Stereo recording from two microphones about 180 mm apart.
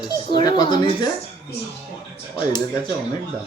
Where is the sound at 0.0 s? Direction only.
25° left (ahead or behind).